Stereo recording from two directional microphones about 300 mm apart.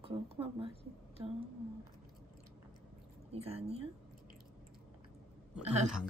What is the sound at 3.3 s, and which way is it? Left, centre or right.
Speech, centre.